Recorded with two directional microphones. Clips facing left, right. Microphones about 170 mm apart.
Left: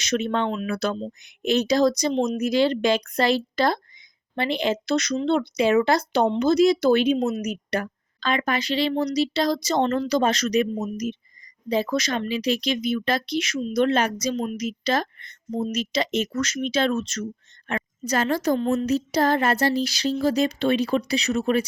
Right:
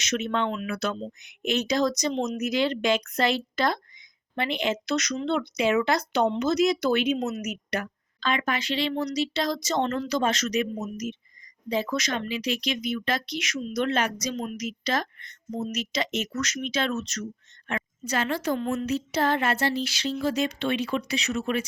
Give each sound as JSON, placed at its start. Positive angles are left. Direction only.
{"t": 0.0, "sound": "speech", "side_deg": 35}
{"t": 17.7, "sound": "speech", "side_deg": 40}